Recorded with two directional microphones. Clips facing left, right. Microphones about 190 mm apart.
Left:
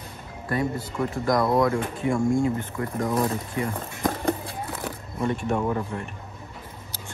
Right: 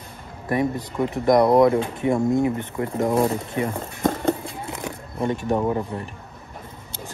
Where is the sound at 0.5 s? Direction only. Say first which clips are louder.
Right 4 dB; 20° right (ahead or behind).